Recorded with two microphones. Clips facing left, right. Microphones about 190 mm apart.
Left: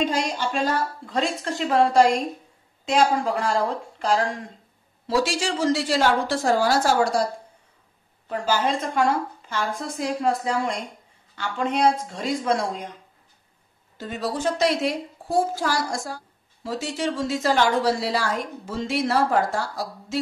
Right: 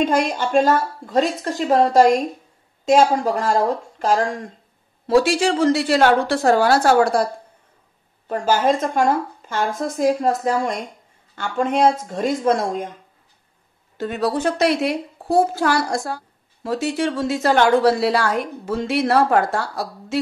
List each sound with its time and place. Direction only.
0.0 s a woman's voice: 55° right (ahead or behind)
5.0 s a woman's voice: 60° right (ahead or behind)
8.3 s a woman's voice: 50° right (ahead or behind)
13.9 s a woman's voice: 60° right (ahead or behind)